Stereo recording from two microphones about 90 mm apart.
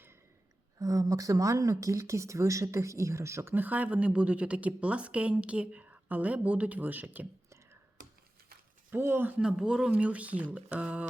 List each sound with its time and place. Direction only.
0.8 s speech: 40° right (ahead or behind)
3.5 s a woman's voice: 20° right (ahead or behind)
8.9 s speech: 25° right (ahead or behind)
9.4 s a woman's voice: 10° right (ahead or behind)